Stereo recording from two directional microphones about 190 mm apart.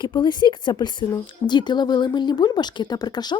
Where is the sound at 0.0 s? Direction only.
25° left (ahead or behind).